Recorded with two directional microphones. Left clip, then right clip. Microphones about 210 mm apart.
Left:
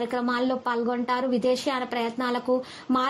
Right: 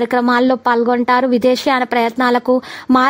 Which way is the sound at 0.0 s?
45° right (ahead or behind).